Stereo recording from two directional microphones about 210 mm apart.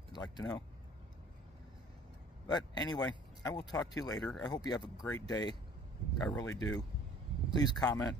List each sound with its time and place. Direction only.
0.1 s speech: 20° left (ahead or behind)
2.4 s speech: 20° left (ahead or behind)